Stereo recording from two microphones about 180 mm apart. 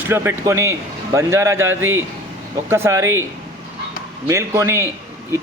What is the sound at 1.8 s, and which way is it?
Speech, 90° right.